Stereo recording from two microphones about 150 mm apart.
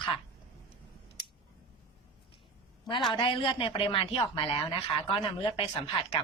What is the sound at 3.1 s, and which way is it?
Speech, 35° left (ahead or behind).